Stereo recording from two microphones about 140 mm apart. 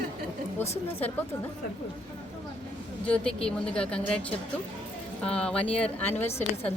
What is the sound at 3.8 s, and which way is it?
A woman's voice, 5° left (ahead or behind).